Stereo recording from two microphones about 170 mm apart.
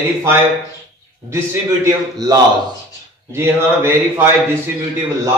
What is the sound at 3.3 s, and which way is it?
Speech, 15° right (ahead or behind).